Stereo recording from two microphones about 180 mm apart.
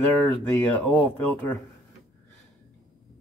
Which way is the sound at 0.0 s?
10° left (ahead or behind).